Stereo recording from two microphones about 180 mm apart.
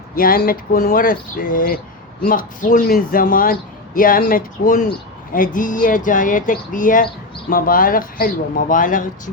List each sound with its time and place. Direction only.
0.2 s speech: 55° left (ahead or behind)